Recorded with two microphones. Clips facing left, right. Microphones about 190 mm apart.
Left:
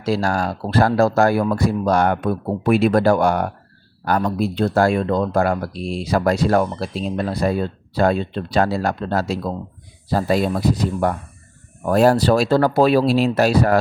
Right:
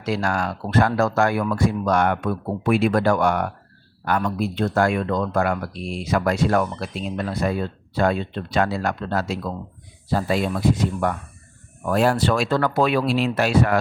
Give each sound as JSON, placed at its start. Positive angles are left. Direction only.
{"t": 0.0, "sound": "speech", "side_deg": 35}